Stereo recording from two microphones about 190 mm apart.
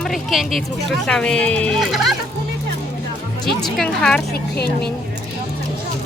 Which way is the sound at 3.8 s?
5° left (ahead or behind).